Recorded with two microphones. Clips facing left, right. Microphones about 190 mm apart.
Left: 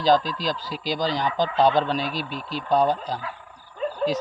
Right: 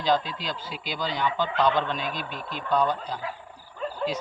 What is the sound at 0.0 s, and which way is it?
Speech, 40° left (ahead or behind).